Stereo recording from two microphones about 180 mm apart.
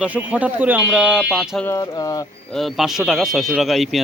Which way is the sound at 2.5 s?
Centre (ahead or behind).